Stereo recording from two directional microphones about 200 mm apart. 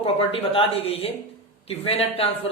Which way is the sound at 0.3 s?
30° left (ahead or behind).